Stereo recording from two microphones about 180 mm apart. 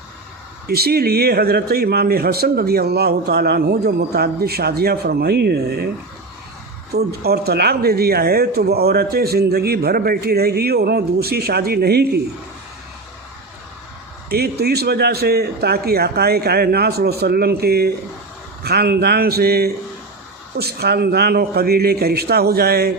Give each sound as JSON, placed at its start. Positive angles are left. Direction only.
{"t": 0.7, "sound": "speech", "side_deg": -60}
{"t": 6.9, "sound": "speech", "side_deg": -60}
{"t": 14.3, "sound": "speech", "side_deg": -60}